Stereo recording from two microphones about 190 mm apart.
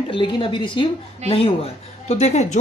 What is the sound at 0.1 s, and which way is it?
A woman's voice, 25° left (ahead or behind).